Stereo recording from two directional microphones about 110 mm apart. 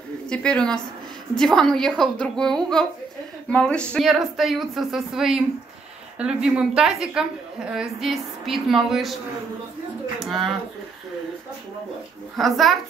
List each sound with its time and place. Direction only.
0.3 s a woman's voice: 10° left (ahead or behind)
10.1 s a sound: centre (ahead or behind)
12.4 s speech: centre (ahead or behind)